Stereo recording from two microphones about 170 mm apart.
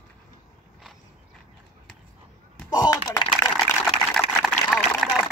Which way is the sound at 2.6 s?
20° left (ahead or behind).